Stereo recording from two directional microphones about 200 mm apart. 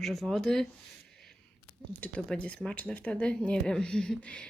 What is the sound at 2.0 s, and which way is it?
Speech, 5° left (ahead or behind).